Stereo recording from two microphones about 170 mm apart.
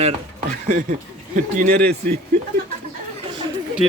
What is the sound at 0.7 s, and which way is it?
Speech, 50° right (ahead or behind).